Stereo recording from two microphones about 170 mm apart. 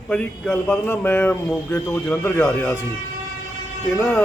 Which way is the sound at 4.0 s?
10° left (ahead or behind).